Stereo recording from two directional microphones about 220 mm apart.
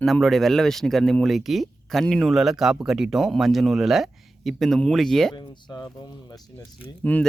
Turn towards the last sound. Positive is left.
turn(degrees=5)  # may be behind; listen again after turning